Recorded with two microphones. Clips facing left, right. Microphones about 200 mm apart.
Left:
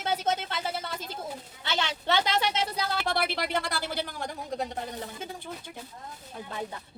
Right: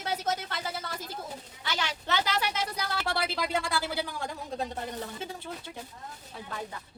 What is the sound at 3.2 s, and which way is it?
Speech, 70° left (ahead or behind).